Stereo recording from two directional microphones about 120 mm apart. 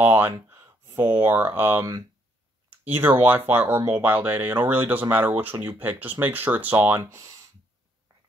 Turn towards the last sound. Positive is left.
turn(degrees=-15)  # may be behind; listen again after turning